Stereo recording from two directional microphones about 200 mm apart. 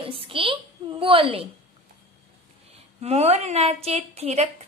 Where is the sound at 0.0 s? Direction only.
25° right (ahead or behind).